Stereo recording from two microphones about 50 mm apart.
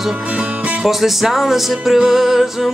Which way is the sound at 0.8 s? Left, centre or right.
Centre.